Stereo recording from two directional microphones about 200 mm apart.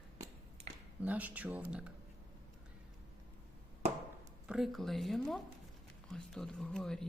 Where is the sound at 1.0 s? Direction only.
10° right (ahead or behind).